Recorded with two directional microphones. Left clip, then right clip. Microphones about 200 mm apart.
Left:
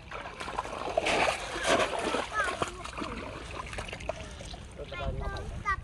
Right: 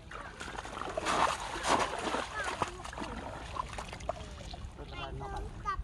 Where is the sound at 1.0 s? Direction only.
5° right (ahead or behind).